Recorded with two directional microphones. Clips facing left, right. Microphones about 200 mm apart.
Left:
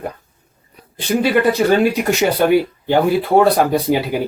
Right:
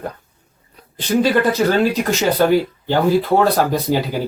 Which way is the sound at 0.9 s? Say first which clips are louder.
Even; 10° left (ahead or behind).